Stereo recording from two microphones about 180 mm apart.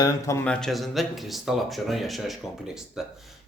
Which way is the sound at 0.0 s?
15° left (ahead or behind).